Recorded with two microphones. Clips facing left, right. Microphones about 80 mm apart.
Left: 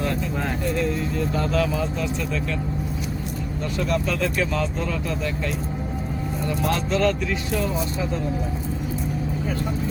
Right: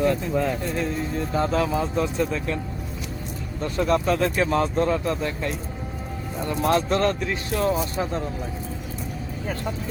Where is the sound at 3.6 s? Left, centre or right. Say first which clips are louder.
Right 3 dB; right.